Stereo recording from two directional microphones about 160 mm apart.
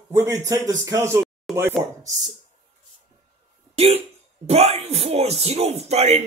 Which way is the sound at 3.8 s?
40° right (ahead or behind).